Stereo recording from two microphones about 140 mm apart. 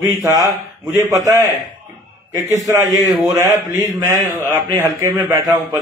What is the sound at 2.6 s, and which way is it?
A man's voice, 25° right (ahead or behind).